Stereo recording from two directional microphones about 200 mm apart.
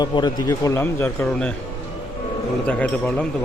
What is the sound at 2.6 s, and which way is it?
Speech, 5° left (ahead or behind).